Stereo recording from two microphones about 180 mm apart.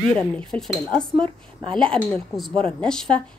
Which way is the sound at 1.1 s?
30° right (ahead or behind).